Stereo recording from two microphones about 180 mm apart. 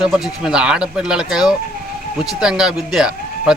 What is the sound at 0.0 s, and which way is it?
Speech, 5° right (ahead or behind).